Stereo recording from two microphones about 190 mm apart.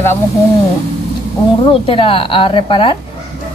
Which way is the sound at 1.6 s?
25° left (ahead or behind).